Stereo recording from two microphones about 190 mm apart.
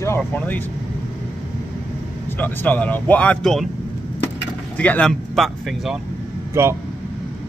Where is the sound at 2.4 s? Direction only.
10° left (ahead or behind).